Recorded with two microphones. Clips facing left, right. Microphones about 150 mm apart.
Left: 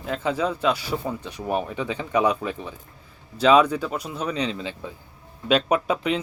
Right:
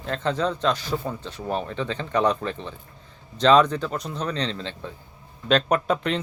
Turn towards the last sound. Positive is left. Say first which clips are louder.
# even
turn(degrees=5)  # may be behind; listen again after turning